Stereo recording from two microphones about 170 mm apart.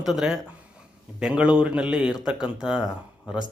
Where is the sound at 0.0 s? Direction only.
Centre (ahead or behind).